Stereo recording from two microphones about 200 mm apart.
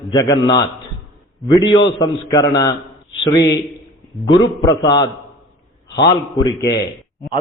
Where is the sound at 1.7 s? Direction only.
20° left (ahead or behind).